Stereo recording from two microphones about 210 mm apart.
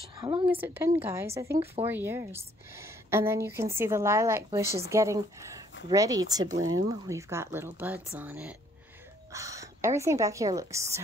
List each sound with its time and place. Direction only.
0.5 s speech: 10° right (ahead or behind)
6.6 s speech: 75° right (ahead or behind)
6.9 s a woman's voice: 15° right (ahead or behind)